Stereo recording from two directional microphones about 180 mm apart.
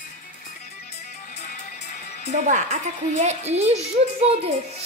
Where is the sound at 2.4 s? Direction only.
45° right (ahead or behind).